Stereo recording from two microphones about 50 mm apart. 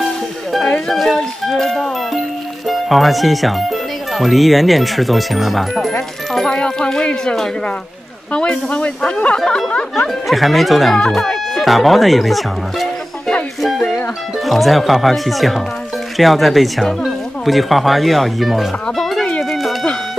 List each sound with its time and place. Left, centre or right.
0.8 s speech: centre
6.3 s speech: centre
9.9 s speech: centre
11.0 s speech: centre
11.6 s speech: centre
13.6 s music: centre
14.4 s speech: centre
18.9 s music: centre